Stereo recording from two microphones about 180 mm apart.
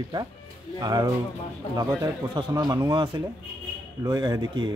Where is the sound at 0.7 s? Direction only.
20° right (ahead or behind).